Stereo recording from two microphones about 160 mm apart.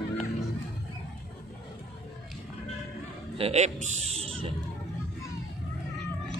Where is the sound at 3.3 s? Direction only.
40° right (ahead or behind).